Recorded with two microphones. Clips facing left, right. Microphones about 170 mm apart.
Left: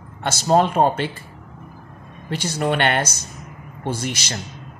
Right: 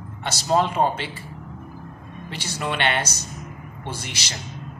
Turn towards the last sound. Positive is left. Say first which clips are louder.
# left 7 dB
turn(degrees=45)  # may be behind; listen again after turning